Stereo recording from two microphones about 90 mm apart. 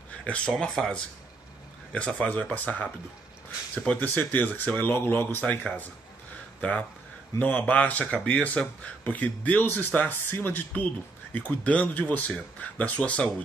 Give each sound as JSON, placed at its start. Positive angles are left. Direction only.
{"t": 0.5, "sound": "speech", "side_deg": 5}